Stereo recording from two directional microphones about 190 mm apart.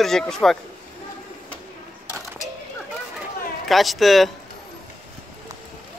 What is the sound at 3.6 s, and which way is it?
Speech, centre (ahead or behind).